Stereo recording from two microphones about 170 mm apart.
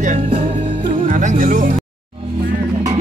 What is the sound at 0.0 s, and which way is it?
Music, 50° right (ahead or behind).